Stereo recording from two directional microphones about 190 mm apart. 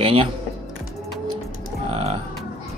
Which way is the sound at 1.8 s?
30° right (ahead or behind).